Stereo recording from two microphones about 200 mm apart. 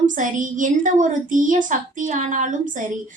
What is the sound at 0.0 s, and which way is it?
A woman's voice, 40° right (ahead or behind).